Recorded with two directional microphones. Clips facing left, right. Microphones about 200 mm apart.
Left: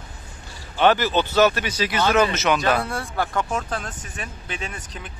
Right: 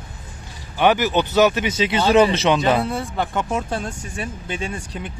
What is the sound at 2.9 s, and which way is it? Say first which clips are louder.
Speech: right 2 dB; centre (ahead or behind).